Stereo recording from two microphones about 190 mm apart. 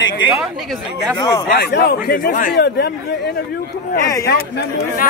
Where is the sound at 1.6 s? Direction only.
60° left (ahead or behind).